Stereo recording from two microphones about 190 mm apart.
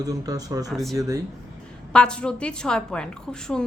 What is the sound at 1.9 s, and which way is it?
Speech, 5° left (ahead or behind).